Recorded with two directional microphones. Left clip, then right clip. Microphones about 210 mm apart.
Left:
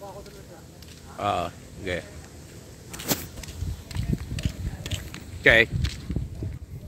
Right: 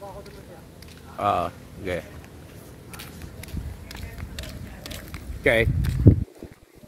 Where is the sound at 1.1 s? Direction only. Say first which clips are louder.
Right 3 dB; 10° right (ahead or behind).